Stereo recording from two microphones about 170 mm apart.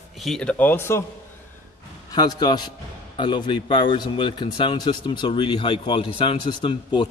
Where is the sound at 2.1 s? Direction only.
25° left (ahead or behind).